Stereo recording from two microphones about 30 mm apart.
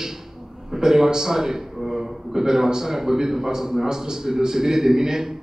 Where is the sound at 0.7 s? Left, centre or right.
Centre.